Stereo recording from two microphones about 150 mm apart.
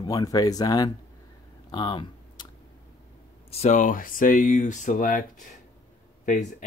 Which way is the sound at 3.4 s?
45° left (ahead or behind).